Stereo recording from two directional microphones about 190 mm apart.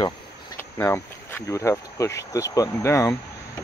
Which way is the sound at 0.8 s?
15° left (ahead or behind).